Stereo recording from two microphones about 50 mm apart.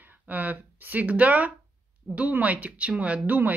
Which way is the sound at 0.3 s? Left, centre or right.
Right.